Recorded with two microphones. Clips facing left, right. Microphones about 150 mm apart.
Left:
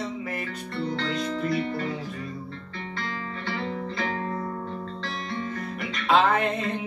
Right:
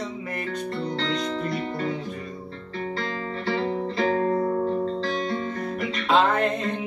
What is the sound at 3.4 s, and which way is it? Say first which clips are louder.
Music: right 6 dB; 35° right (ahead or behind).